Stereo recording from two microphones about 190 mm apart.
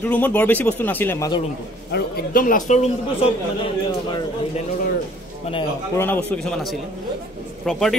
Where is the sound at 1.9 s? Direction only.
50° left (ahead or behind).